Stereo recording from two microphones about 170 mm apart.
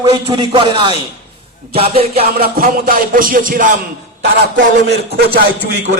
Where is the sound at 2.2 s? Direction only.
60° right (ahead or behind).